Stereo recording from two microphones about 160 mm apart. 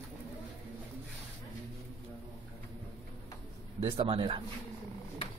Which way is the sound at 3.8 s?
35° right (ahead or behind).